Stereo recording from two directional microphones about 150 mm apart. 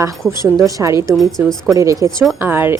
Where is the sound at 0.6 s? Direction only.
20° right (ahead or behind).